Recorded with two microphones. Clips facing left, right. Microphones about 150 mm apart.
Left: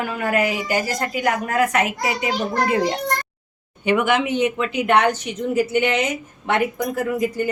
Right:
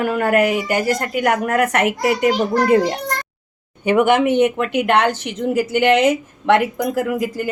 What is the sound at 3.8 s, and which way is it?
A woman's voice, 45° right (ahead or behind).